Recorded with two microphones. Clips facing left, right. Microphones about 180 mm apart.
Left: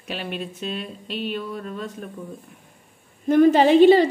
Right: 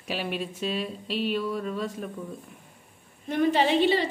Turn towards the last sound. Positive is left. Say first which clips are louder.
# left 9 dB
turn(degrees=45)  # may be behind; listen again after turning